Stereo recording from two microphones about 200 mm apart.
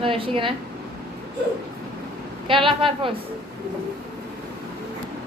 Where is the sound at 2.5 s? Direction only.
25° right (ahead or behind).